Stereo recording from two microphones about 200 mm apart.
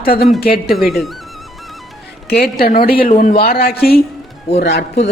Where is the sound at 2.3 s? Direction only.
50° left (ahead or behind).